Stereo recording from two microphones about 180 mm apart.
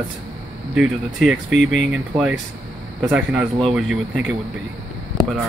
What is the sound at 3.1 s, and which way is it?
Speech, 10° right (ahead or behind).